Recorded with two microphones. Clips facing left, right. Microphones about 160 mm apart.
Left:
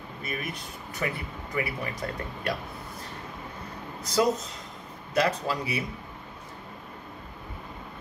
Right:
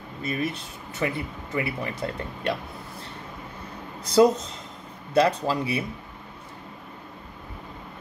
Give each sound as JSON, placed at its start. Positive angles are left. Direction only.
{"t": 0.2, "sound": "speech", "side_deg": -30}
{"t": 4.0, "sound": "speech", "side_deg": -30}